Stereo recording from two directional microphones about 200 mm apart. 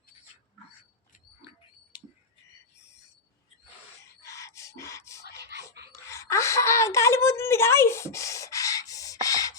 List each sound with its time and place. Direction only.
4.2 s music: 15° left (ahead or behind)
5.3 s whispering: 55° right (ahead or behind)
6.1 s a sound: 15° left (ahead or behind)